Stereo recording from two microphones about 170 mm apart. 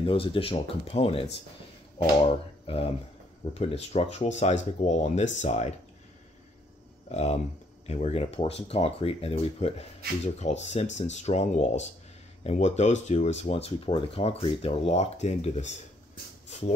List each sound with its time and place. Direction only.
0.0 s speech: 30° left (ahead or behind)
7.1 s speech: 40° left (ahead or behind)